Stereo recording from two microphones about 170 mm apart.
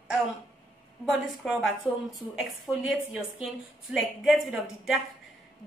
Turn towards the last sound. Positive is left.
turn(degrees=0)  # may be behind; listen again after turning